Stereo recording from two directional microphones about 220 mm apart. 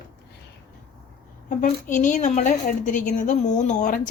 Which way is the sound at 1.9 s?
35° left (ahead or behind).